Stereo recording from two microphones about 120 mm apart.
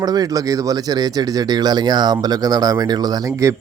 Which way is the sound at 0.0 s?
30° right (ahead or behind).